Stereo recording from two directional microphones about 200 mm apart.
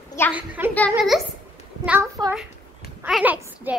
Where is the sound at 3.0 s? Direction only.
5° right (ahead or behind).